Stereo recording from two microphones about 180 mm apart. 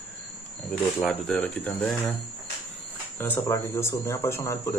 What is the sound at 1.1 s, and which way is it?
Speech, 10° left (ahead or behind).